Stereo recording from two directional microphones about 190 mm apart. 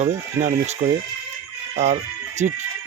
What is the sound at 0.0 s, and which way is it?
Speech, 35° right (ahead or behind).